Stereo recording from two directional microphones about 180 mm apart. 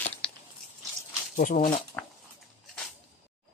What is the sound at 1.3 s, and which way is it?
Speech, 50° left (ahead or behind).